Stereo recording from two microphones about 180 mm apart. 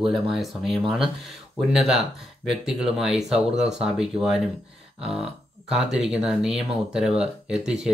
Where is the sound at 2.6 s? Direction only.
Centre (ahead or behind).